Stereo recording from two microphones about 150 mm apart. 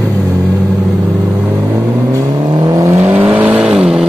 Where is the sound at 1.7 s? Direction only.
20° right (ahead or behind).